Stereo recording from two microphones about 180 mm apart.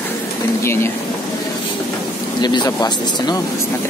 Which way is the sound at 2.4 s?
20° left (ahead or behind).